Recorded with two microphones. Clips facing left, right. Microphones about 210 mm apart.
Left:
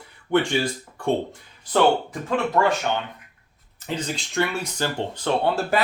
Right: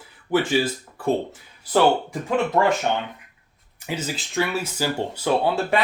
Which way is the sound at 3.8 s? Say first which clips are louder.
Even; 5° right (ahead or behind).